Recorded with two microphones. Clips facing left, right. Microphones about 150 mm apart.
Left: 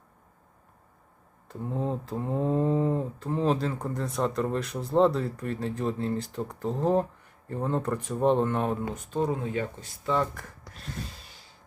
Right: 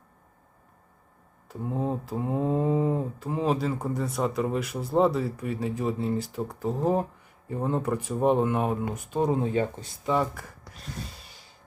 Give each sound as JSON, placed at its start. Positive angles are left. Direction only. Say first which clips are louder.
{"t": 1.5, "sound": "mantra", "louder": "right 2 dB", "side_deg": -5}
{"t": 9.3, "sound": "speech", "louder": "right 5 dB", "side_deg": -30}
{"t": 10.0, "sound": "mantra", "louder": "right 1 dB", "side_deg": -10}